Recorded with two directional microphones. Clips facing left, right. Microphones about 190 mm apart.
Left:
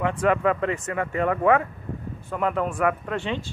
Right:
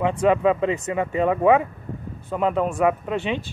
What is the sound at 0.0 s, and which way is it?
Speech, 20° right (ahead or behind).